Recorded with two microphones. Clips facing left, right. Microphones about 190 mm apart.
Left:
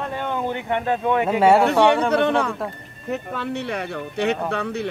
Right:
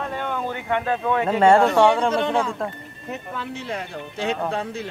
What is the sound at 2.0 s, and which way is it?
Speech, 65° left (ahead or behind).